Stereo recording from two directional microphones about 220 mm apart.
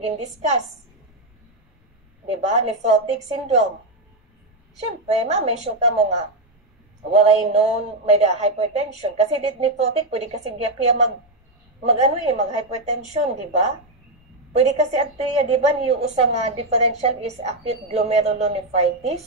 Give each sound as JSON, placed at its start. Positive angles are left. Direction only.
{"t": 0.0, "sound": "a woman's voice", "side_deg": -30}
{"t": 2.3, "sound": "a woman's voice", "side_deg": -30}
{"t": 5.2, "sound": "a woman's voice", "side_deg": -30}
{"t": 14.7, "sound": "a woman's voice", "side_deg": -30}